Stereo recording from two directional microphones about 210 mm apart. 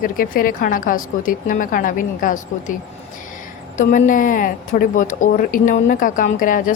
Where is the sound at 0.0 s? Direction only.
40° left (ahead or behind).